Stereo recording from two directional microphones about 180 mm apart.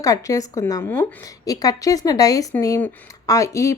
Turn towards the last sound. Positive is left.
turn(degrees=15)  # may be behind; listen again after turning